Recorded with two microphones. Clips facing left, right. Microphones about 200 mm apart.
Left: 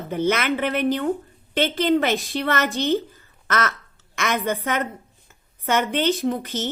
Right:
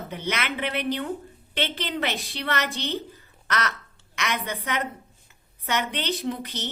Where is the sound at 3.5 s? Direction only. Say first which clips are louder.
Left 4 dB; 45° left (ahead or behind).